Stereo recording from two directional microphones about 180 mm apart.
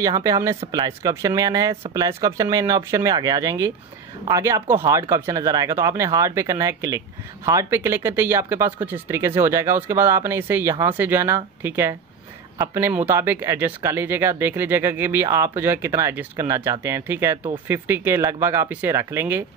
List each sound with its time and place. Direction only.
0.0 s speech: 20° right (ahead or behind)